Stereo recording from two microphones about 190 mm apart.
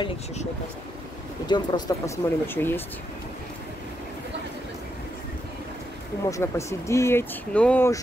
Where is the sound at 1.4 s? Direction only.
25° left (ahead or behind).